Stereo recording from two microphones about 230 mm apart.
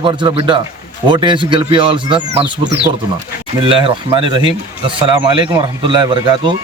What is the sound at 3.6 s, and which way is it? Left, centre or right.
A man's voice, right.